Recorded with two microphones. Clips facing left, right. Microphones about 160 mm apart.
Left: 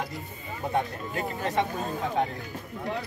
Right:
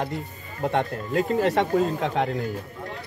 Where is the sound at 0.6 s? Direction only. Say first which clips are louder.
Right 4 dB; 80° right.